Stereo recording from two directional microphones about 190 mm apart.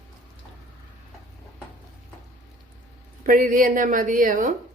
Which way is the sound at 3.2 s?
45° right (ahead or behind).